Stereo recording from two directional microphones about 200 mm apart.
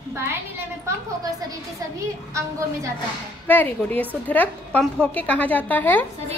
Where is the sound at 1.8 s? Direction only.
15° right (ahead or behind).